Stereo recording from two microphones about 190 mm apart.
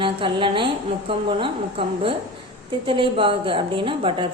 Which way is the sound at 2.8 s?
25° right (ahead or behind).